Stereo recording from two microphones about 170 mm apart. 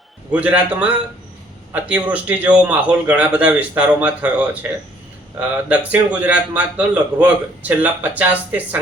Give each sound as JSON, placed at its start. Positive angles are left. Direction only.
{"t": 0.3, "sound": "a man's voice", "side_deg": -10}